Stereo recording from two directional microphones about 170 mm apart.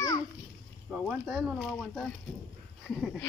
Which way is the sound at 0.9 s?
5° right (ahead or behind).